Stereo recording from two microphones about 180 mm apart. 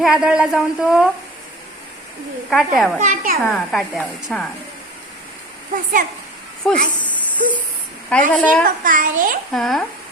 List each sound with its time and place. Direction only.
0.0 s speech: 5° right (ahead or behind)
2.5 s speech: centre (ahead or behind)
3.0 s a child's voice: 45° right (ahead or behind)
3.5 s speech: centre (ahead or behind)
5.7 s a child's voice: 50° right (ahead or behind)
6.6 s speech: centre (ahead or behind)
7.0 s a sound: 10° left (ahead or behind)
8.3 s a woman's voice: 5° left (ahead or behind)
8.6 s a child's voice: 50° right (ahead or behind)
9.5 s speech: centre (ahead or behind)